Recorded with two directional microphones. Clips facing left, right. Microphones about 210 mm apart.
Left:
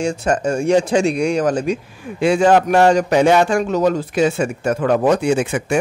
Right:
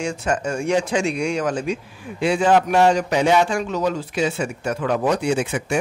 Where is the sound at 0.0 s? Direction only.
35° left (ahead or behind).